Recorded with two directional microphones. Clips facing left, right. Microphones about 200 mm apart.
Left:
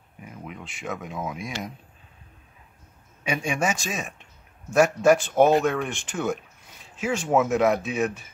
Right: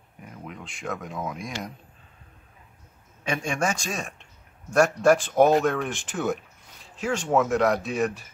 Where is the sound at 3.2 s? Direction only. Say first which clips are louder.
Left 1 dB; 5° left (ahead or behind).